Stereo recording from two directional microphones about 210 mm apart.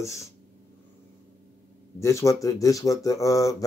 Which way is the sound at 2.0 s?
15° left (ahead or behind).